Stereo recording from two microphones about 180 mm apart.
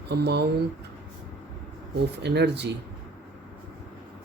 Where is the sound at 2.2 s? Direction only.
70° right (ahead or behind).